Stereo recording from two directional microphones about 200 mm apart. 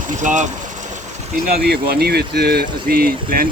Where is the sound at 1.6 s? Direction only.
55° right (ahead or behind).